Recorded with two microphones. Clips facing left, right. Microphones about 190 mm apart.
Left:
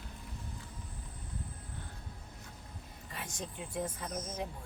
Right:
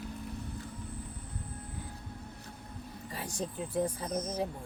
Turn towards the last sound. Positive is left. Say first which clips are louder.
# right 6 dB
turn(degrees=-35)  # may be behind; listen again after turning